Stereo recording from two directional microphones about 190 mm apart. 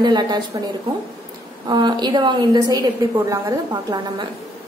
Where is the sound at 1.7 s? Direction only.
20° right (ahead or behind).